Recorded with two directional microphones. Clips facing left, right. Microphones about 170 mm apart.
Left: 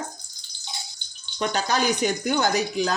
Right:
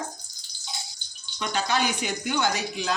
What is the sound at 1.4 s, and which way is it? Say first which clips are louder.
Speech: left 2 dB; 40° left (ahead or behind).